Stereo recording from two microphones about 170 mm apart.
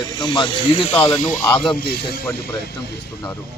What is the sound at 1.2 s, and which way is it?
Speech, 50° left (ahead or behind).